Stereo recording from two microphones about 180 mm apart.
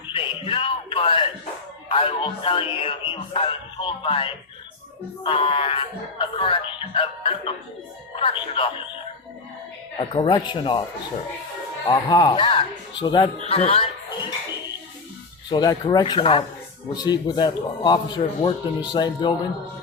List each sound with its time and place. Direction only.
0.1 s a sound: 30° left (ahead or behind)
1.9 s speech: 30° left (ahead or behind)
10.0 s speech: 25° left (ahead or behind)
11.9 s speech: 25° left (ahead or behind)
15.4 s speech: 20° left (ahead or behind)